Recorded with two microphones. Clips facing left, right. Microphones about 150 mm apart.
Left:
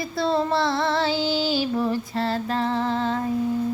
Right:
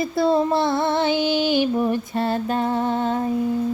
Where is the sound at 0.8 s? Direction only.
25° right (ahead or behind).